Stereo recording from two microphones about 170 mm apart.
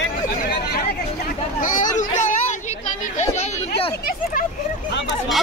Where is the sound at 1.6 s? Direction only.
50° left (ahead or behind).